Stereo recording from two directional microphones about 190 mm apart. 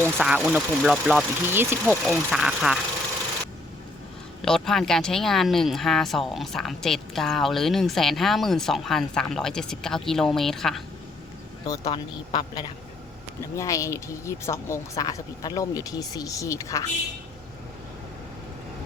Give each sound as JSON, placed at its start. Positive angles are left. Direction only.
{"t": 0.0, "sound": "speech", "side_deg": -5}
{"t": 4.4, "sound": "speech", "side_deg": 0}
{"t": 11.7, "sound": "a woman's voice", "side_deg": 20}